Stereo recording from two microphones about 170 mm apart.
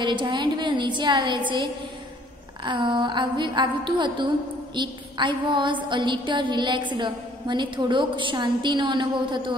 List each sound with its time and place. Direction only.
0.0 s a woman's voice: 25° right (ahead or behind)
2.6 s a woman's voice: 30° right (ahead or behind)